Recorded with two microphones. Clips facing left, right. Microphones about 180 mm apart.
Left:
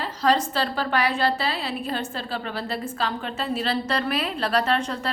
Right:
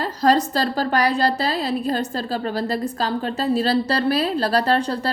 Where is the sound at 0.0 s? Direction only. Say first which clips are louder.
Right 4 dB; 40° right (ahead or behind).